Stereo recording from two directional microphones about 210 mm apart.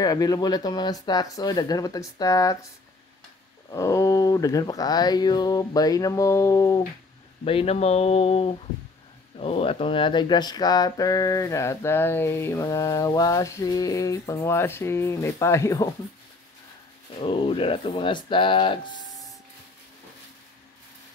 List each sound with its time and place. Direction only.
0.0 s speech: 20° left (ahead or behind)
3.7 s speech: 15° left (ahead or behind)
7.4 s speech: 30° left (ahead or behind)
17.2 s speech: 25° left (ahead or behind)